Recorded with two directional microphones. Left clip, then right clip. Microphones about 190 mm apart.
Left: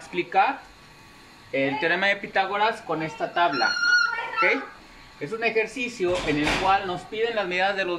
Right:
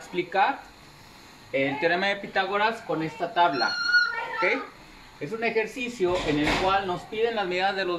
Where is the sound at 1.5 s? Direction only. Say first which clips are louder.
Left 1 dB; 15° left (ahead or behind).